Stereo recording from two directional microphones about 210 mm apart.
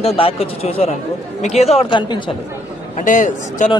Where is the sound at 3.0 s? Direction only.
40° left (ahead or behind).